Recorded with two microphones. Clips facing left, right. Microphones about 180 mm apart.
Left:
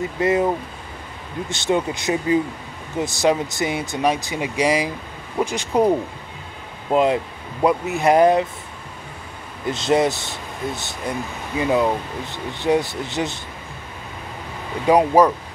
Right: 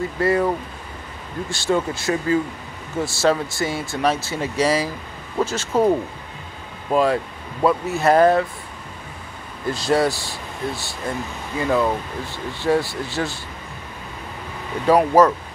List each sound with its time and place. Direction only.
0.2 s speech: 20° left (ahead or behind)
9.7 s speech: 20° left (ahead or behind)
14.9 s speech: 15° left (ahead or behind)